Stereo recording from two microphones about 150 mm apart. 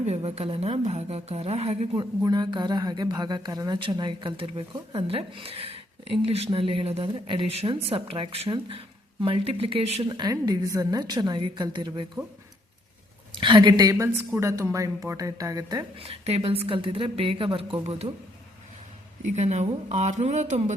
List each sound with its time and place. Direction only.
0.0 s a woman's voice: 45° right (ahead or behind)
2.0 s speech: 30° right (ahead or behind)
4.7 s speech: 25° right (ahead or behind)
5.0 s speech: 40° right (ahead or behind)
10.1 s speech: 30° right (ahead or behind)
13.3 s speech: 30° right (ahead or behind)
16.0 s speech: 45° right (ahead or behind)
19.2 s a woman's voice: 50° right (ahead or behind)